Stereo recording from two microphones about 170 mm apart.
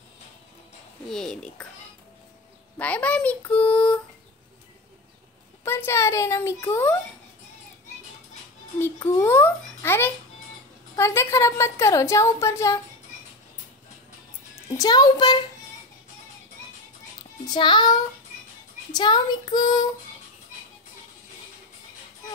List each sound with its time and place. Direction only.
1.0 s speech: 5° left (ahead or behind)
2.8 s a woman's voice: 10° left (ahead or behind)
5.6 s a woman's voice: 15° left (ahead or behind)
8.7 s a woman's voice: 15° left (ahead or behind)
14.8 s speech: 25° left (ahead or behind)
17.6 s speech: 25° left (ahead or behind)